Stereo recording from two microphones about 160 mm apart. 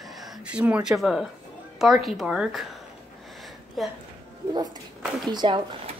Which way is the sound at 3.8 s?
Centre (ahead or behind).